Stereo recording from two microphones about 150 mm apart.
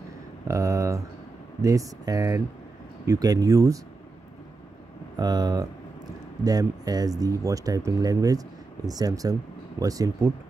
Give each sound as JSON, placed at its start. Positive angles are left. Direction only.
{"t": 0.5, "sound": "speech", "side_deg": -20}
{"t": 5.1, "sound": "speech", "side_deg": -25}